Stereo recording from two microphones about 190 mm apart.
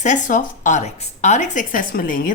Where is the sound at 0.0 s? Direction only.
40° left (ahead or behind).